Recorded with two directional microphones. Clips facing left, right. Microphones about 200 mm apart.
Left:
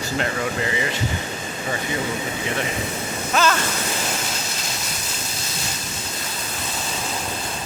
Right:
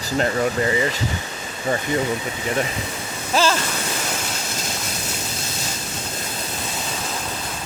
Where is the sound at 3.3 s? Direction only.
30° right (ahead or behind).